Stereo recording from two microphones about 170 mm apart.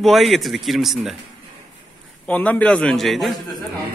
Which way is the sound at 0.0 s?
Centre (ahead or behind).